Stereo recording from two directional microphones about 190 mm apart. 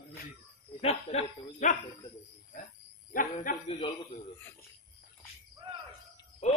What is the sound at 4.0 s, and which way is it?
Speech, 10° left (ahead or behind).